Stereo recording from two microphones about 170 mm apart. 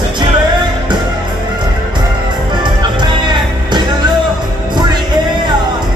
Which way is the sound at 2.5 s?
25° right (ahead or behind).